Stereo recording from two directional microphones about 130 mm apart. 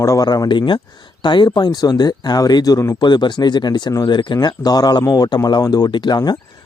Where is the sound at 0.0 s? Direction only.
25° left (ahead or behind).